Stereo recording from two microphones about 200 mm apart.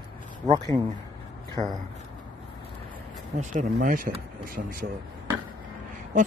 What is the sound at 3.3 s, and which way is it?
Speech, 40° right (ahead or behind).